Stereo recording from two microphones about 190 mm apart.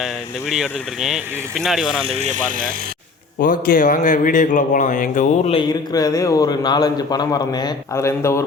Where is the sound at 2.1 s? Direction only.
35° right (ahead or behind).